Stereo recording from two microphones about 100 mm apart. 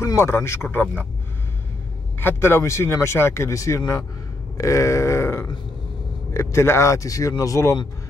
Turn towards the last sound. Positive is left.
turn(degrees=30)  # may be behind; listen again after turning